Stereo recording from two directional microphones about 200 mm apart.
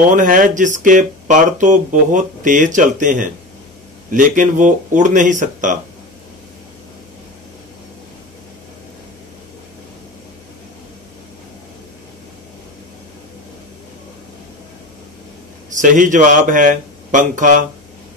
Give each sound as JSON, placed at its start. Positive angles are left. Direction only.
{"t": 0.1, "sound": "speech", "side_deg": -40}
{"t": 15.8, "sound": "speech", "side_deg": -40}